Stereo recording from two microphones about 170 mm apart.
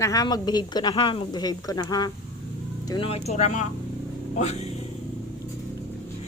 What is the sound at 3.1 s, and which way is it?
A man's voice, 40° left (ahead or behind).